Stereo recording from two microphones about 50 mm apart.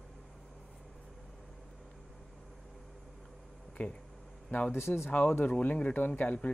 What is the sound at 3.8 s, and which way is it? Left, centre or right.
Speech, left.